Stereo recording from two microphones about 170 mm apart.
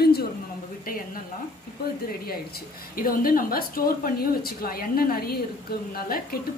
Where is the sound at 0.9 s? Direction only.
60° left (ahead or behind).